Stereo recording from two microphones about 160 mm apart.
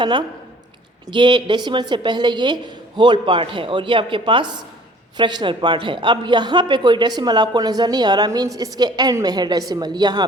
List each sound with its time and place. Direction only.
0.0 s a man's voice: 30° right (ahead or behind)